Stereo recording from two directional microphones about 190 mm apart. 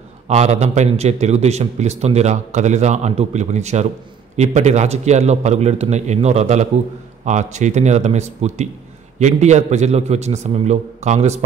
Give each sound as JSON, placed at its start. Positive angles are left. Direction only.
{"t": 0.3, "sound": "a man's voice", "side_deg": -35}